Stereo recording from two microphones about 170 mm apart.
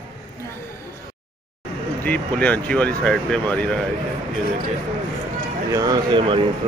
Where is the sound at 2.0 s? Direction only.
10° left (ahead or behind).